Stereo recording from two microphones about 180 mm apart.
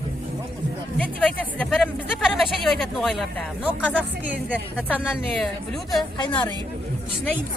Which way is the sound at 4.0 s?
10° right (ahead or behind).